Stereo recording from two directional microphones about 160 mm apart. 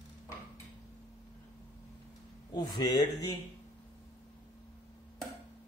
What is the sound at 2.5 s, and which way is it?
Speech, 25° left (ahead or behind).